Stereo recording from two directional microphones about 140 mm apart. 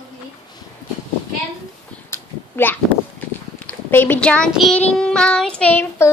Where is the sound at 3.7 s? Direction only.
15° left (ahead or behind).